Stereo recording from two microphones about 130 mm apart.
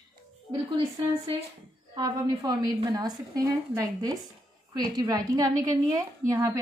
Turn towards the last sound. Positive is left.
turn(degrees=-20)  # may be behind; listen again after turning